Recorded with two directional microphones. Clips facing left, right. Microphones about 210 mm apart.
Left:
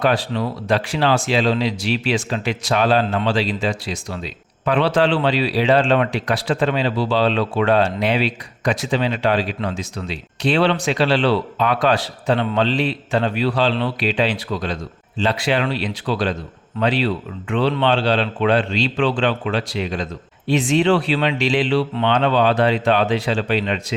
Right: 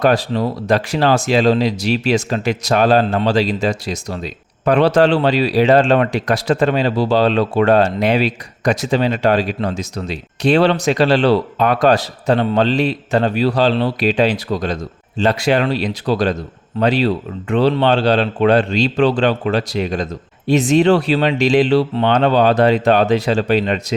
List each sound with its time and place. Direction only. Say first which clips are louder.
0.0 s speech: right 4 dB; 40° right (ahead or behind)